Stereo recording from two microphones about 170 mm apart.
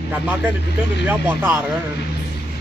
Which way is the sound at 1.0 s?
10° right (ahead or behind).